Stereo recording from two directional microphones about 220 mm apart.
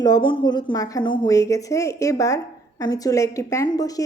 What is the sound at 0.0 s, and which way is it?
A woman's voice, 20° left (ahead or behind).